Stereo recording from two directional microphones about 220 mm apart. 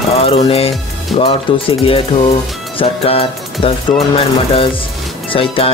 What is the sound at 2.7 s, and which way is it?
Speech, 25° left (ahead or behind).